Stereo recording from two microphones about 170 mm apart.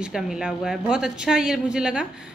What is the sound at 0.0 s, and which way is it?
A woman's voice, 5° right (ahead or behind).